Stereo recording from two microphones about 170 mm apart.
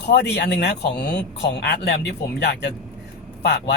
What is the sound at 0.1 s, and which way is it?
Speech, 80° left.